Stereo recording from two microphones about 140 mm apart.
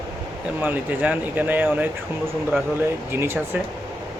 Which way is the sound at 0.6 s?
15° right (ahead or behind).